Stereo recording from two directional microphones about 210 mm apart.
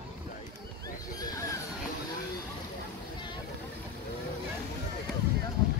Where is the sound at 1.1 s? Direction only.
15° left (ahead or behind).